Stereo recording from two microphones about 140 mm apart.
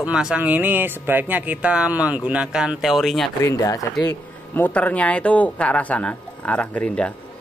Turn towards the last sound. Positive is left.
turn(degrees=10)  # may be behind; listen again after turning